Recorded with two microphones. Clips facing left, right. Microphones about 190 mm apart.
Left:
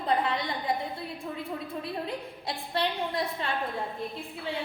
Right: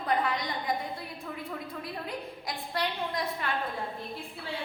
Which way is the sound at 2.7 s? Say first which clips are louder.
Left 3 dB; 25° left (ahead or behind).